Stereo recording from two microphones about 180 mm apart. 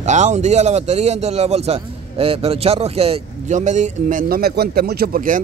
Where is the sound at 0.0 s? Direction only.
40° right (ahead or behind).